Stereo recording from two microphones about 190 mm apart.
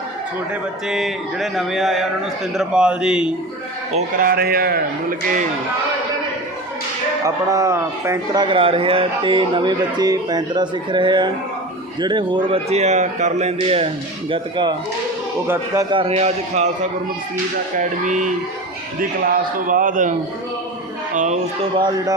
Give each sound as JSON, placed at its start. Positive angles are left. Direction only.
{"t": 0.9, "sound": "music", "side_deg": 0}
{"t": 4.2, "sound": "a man's voice", "side_deg": -50}
{"t": 7.3, "sound": "a man's voice", "side_deg": -15}
{"t": 15.9, "sound": "a man's voice", "side_deg": -30}
{"t": 17.7, "sound": "a man's voice", "side_deg": -40}
{"t": 21.2, "sound": "a man's voice", "side_deg": -40}
{"t": 21.8, "sound": "a man's voice", "side_deg": -20}